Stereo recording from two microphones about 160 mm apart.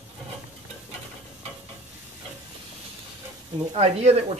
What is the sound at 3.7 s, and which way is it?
Speech, 40° right (ahead or behind).